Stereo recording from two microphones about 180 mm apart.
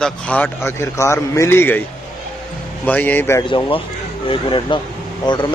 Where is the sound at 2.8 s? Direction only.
10° left (ahead or behind).